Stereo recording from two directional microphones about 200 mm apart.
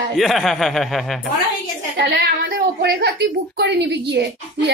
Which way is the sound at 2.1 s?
65° right (ahead or behind).